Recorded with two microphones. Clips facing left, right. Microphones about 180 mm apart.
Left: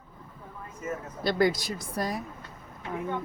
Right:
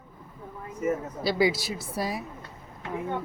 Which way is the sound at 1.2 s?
5° right (ahead or behind).